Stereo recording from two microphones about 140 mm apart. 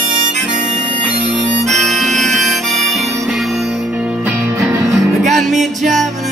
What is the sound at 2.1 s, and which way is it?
Music, 60° right (ahead or behind).